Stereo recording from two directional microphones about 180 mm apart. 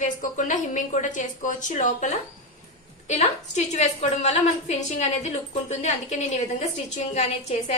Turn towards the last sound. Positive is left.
turn(degrees=35)  # may be behind; listen again after turning